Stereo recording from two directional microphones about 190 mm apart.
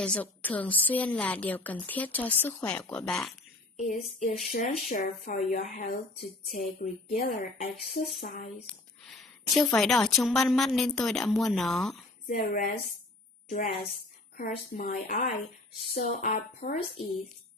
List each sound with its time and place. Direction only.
0.0 s a woman's voice: 5° left (ahead or behind)
3.8 s speech: 45° left (ahead or behind)
7.2 s speech: 35° left (ahead or behind)
7.6 s speech: 50° left (ahead or behind)
8.6 s a woman's voice: centre (ahead or behind)
12.3 s speech: 45° left (ahead or behind)
14.3 s speech: 50° left (ahead or behind)